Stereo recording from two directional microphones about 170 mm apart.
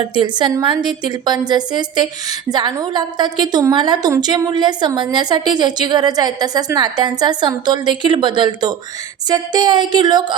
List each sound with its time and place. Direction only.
0.1 s a woman's voice: 25° right (ahead or behind)